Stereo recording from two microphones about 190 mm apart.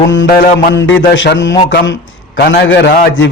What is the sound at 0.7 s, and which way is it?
A man's voice, 75° left (ahead or behind).